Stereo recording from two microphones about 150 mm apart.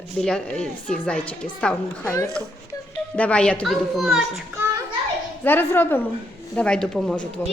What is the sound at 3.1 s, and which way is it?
A woman's voice, 10° left (ahead or behind).